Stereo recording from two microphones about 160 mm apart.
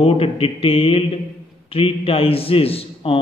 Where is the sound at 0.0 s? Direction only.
35° left (ahead or behind).